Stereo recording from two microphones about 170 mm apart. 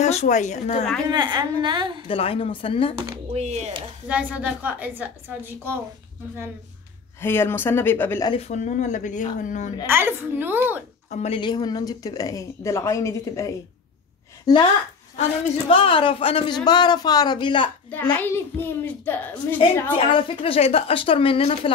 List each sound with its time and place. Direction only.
0.0 s speech: 40° left (ahead or behind)
1.0 s a woman's voice: 25° right (ahead or behind)
2.0 s speech: 35° left (ahead or behind)
3.3 s speech: 40° right (ahead or behind)
4.1 s a woman's voice: 10° right (ahead or behind)
7.2 s a child's voice: 15° left (ahead or behind)
8.3 s speech: 40° left (ahead or behind)
9.8 s a woman's voice: 15° right (ahead or behind)
11.1 s a woman's voice: 40° left (ahead or behind)
18.1 s a child's voice: 10° left (ahead or behind)
20.1 s speech: 30° left (ahead or behind)